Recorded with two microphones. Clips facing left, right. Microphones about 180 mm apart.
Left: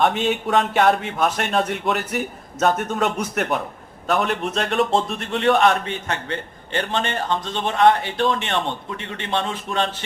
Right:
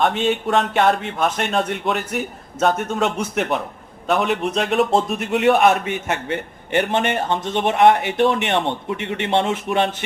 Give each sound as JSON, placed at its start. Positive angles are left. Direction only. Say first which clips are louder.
{"t": 0.0, "sound": "a man's voice", "louder": "right 1 dB", "side_deg": 0}